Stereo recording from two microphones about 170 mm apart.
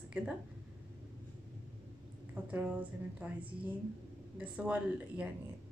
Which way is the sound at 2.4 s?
10° right (ahead or behind).